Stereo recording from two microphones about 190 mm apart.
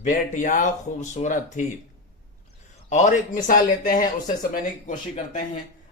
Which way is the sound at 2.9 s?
40° left (ahead or behind).